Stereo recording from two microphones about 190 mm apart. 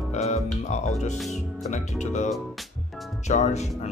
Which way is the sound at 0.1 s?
35° left (ahead or behind).